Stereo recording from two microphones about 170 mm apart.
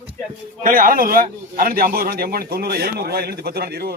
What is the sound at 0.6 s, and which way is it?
A man's voice, 55° right (ahead or behind).